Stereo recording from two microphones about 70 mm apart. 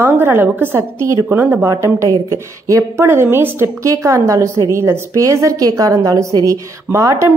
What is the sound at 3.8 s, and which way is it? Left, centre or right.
A woman's voice, right.